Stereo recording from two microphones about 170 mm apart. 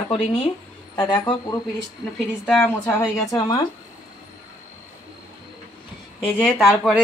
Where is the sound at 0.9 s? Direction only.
25° left (ahead or behind).